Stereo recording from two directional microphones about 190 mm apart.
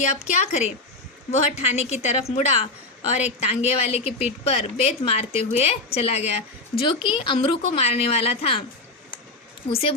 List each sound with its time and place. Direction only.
0.0 s a woman's voice: 35° left (ahead or behind)